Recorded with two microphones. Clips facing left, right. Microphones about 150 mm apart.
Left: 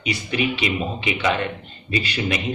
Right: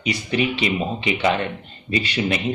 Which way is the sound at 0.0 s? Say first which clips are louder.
Right 2 dB; 35° right (ahead or behind).